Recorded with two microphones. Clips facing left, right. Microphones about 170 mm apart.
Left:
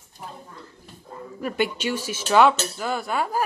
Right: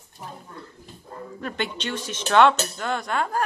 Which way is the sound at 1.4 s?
10° left (ahead or behind).